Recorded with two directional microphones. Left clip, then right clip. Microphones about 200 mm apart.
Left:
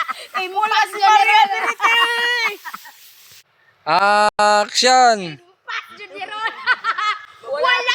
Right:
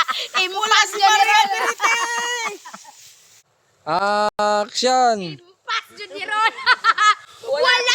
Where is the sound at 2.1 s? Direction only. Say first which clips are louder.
Left 5 dB; 60° right (ahead or behind).